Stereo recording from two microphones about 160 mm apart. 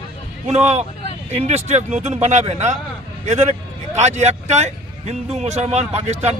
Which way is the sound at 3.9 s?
45° right (ahead or behind).